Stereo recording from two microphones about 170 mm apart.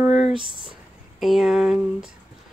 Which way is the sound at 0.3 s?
30° right (ahead or behind).